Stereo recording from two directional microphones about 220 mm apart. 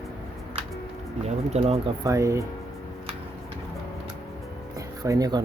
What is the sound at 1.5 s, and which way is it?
Speech, 30° right (ahead or behind).